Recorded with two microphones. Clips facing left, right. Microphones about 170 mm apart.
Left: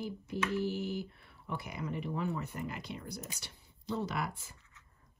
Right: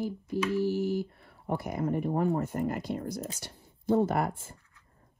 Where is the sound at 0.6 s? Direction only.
60° left (ahead or behind).